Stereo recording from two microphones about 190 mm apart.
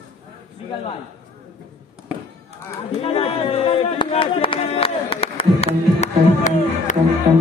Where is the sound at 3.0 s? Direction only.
30° left (ahead or behind).